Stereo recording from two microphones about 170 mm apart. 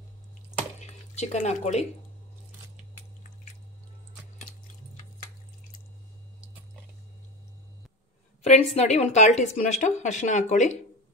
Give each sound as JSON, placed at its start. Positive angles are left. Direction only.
{"t": 0.7, "sound": "speech", "side_deg": 40}
{"t": 8.4, "sound": "a woman's voice", "side_deg": 40}